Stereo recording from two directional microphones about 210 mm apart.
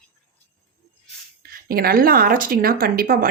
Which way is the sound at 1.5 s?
45° right (ahead or behind).